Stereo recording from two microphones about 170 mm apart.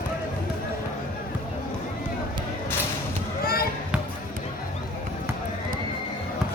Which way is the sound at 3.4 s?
60° left (ahead or behind).